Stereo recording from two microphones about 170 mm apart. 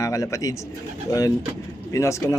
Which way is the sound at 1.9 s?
15° left (ahead or behind).